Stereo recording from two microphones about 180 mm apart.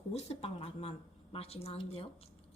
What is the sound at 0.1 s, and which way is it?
A woman's voice, 35° left (ahead or behind).